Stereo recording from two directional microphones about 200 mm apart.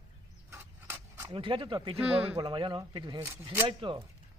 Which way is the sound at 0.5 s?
15° right (ahead or behind).